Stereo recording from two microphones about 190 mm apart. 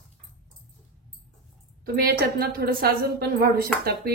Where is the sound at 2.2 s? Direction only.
55° right (ahead or behind).